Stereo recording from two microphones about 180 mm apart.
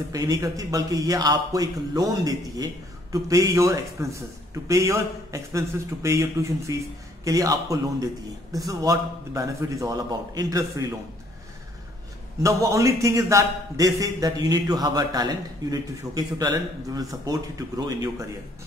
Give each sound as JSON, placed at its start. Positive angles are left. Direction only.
{"t": 0.1, "sound": "a man's voice", "side_deg": -20}
{"t": 12.4, "sound": "a man's voice", "side_deg": -15}